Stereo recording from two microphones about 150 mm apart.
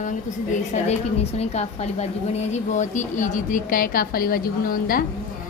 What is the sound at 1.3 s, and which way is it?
A woman's voice, 45° left (ahead or behind).